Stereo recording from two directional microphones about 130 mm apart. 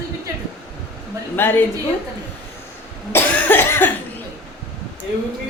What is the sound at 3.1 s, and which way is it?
Cough, 15° left (ahead or behind).